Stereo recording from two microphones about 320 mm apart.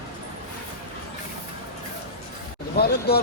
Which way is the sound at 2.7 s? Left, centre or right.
Left.